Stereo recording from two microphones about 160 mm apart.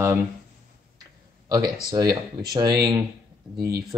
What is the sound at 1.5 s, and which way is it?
Speech, 25° right (ahead or behind).